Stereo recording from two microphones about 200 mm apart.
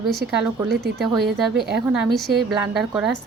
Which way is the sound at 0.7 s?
50° right (ahead or behind).